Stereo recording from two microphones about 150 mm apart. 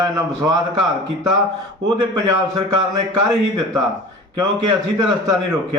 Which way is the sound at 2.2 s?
25° right (ahead or behind).